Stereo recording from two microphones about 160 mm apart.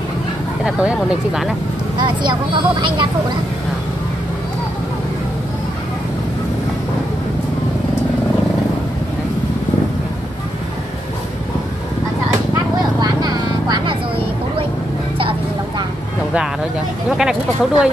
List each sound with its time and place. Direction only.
0.7 s speech: 5° right (ahead or behind)
2.0 s speech: 30° right (ahead or behind)
13.0 s vehicle: 25° right (ahead or behind)
17.2 s speech: 5° right (ahead or behind)